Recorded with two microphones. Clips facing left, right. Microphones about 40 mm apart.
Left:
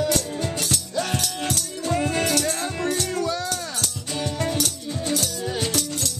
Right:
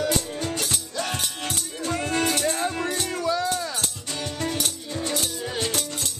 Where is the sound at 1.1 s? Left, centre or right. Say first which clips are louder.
Left 3 dB; right.